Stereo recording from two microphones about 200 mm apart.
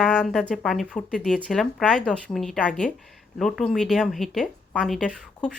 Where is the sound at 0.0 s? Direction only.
Centre (ahead or behind).